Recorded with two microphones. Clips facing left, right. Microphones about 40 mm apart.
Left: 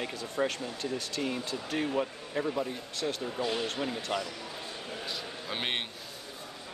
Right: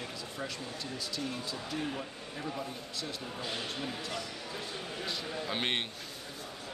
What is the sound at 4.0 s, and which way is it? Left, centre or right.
Speech, left.